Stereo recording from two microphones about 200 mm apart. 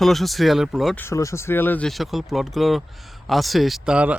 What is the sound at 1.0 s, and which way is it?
Speech, 15° left (ahead or behind).